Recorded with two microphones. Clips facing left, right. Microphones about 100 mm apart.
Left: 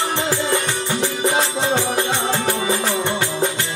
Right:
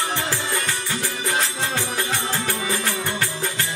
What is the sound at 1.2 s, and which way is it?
Music, 25° left (ahead or behind).